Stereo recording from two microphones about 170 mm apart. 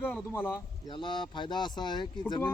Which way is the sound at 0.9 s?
30° left (ahead or behind).